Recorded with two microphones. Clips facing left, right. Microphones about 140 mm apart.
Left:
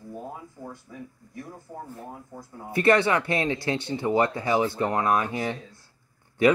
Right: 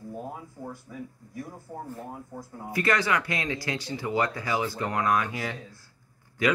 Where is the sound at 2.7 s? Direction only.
30° left (ahead or behind).